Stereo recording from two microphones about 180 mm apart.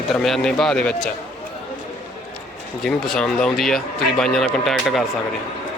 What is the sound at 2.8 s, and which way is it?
Speech, 5° left (ahead or behind).